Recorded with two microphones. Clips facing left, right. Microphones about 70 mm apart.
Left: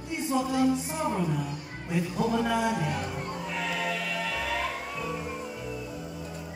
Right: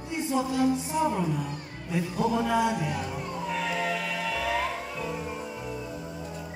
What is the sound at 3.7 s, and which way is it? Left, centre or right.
Choir, right.